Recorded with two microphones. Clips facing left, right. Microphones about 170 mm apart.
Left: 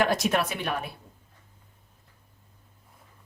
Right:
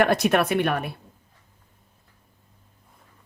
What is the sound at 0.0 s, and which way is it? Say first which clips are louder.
Speech: right 5 dB; 60° right (ahead or behind).